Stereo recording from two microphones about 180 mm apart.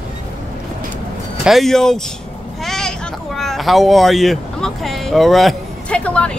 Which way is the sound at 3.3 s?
Centre (ahead or behind).